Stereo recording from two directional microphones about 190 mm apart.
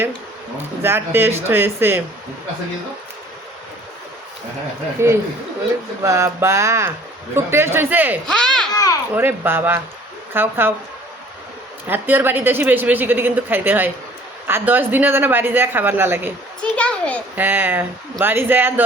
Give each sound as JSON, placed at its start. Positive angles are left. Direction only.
{"t": 0.8, "sound": "speech", "side_deg": -10}
{"t": 5.0, "sound": "speech", "side_deg": -15}
{"t": 8.3, "sound": "speech", "side_deg": 5}
{"t": 8.7, "sound": "a sound", "side_deg": 15}
{"t": 9.1, "sound": "speech", "side_deg": -10}
{"t": 11.9, "sound": "speech", "side_deg": -10}
{"t": 16.6, "sound": "a child's voice", "side_deg": 5}
{"t": 17.3, "sound": "speech", "side_deg": -10}